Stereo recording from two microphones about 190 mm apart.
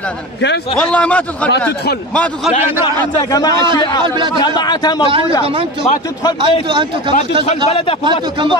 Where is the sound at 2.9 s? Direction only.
20° left (ahead or behind).